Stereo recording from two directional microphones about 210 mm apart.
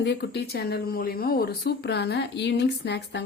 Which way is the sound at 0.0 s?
55° left (ahead or behind).